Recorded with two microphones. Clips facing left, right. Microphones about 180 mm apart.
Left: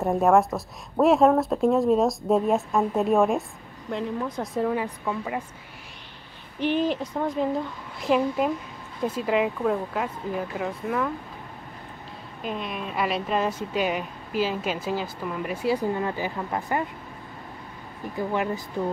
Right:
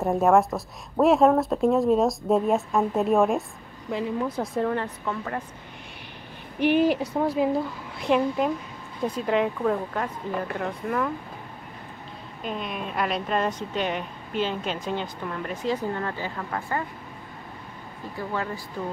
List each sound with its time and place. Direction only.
0.0 s a woman's voice: centre (ahead or behind)
6.6 s a woman's voice: 10° right (ahead or behind)
12.4 s speech: centre (ahead or behind); by 16.8 s 20° left (ahead or behind)
18.3 s speech: 20° left (ahead or behind)